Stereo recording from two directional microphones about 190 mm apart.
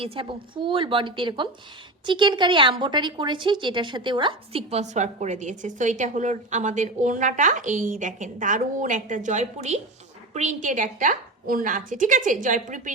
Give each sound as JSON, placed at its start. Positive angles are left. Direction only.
{"t": 0.0, "sound": "a woman's voice", "side_deg": -30}